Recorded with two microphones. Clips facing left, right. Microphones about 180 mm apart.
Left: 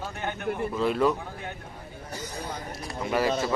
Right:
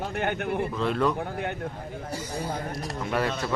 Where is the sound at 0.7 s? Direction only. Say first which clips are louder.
Left 3 dB; 5° left (ahead or behind).